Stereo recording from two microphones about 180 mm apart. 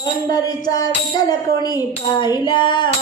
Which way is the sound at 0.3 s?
20° left (ahead or behind).